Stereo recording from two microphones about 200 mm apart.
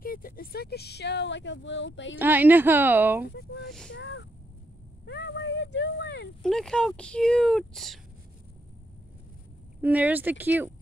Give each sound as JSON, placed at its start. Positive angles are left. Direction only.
{"t": 0.0, "sound": "speech", "side_deg": 45}
{"t": 2.1, "sound": "a woman's voice", "side_deg": -10}
{"t": 4.0, "sound": "speech", "side_deg": 60}
{"t": 6.4, "sound": "speech", "side_deg": 0}
{"t": 9.8, "sound": "a woman's voice", "side_deg": -10}